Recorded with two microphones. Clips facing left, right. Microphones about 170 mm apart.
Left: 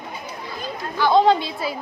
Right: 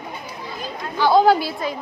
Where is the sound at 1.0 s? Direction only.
5° right (ahead or behind).